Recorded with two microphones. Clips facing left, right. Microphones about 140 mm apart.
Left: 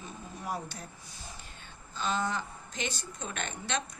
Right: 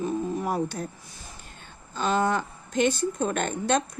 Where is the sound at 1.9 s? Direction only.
55° right (ahead or behind).